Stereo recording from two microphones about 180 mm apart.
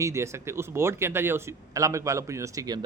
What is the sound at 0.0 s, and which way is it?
Speech, 15° right (ahead or behind).